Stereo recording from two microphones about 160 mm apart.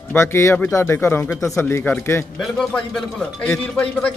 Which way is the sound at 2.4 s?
Centre (ahead or behind).